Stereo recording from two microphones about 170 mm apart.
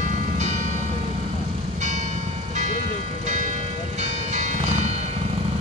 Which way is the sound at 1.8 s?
45° right (ahead or behind).